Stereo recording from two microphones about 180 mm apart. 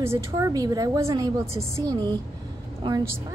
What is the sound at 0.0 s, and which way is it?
A woman's voice, 15° right (ahead or behind).